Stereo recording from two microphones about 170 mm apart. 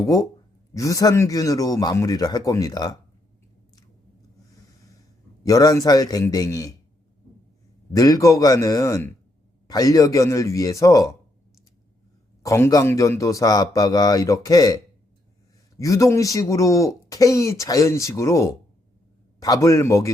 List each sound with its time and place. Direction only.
0.0 s speech: 20° left (ahead or behind)
5.4 s speech: 20° left (ahead or behind)
7.9 s speech: 20° left (ahead or behind)
12.4 s speech: 15° left (ahead or behind)
15.8 s speech: 20° left (ahead or behind)